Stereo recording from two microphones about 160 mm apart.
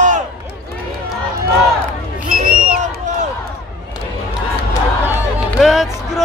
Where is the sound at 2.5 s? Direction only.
60° right (ahead or behind).